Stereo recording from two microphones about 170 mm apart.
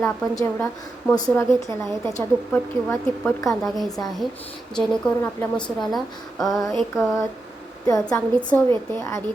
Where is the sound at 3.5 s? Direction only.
Centre (ahead or behind).